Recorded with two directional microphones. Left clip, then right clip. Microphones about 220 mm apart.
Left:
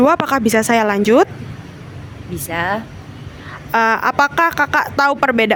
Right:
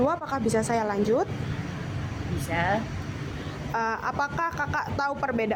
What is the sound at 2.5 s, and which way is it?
Speech, 45° left (ahead or behind).